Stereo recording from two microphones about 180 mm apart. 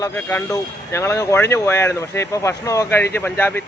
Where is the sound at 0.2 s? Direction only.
15° left (ahead or behind).